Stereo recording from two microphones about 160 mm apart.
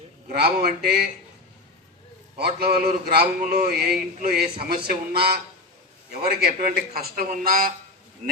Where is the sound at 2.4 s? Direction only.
75° right (ahead or behind).